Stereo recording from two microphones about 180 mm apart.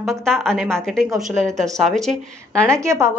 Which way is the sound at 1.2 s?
40° right (ahead or behind).